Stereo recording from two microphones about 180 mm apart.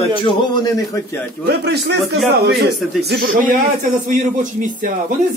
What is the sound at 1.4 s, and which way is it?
A man's voice, 65° right (ahead or behind).